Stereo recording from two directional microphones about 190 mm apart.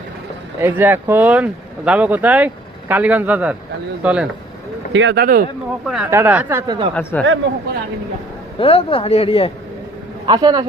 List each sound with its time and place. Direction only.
0.6 s speech: 10° right (ahead or behind)
4.9 s speech: 75° right (ahead or behind)
5.2 s speech: 50° right (ahead or behind)
5.8 s speech: 5° right (ahead or behind); by 6.9 s 20° right (ahead or behind)
6.9 s speech: 10° left (ahead or behind)
8.5 s speech: 30° left (ahead or behind)
10.2 s speech: 20° right (ahead or behind)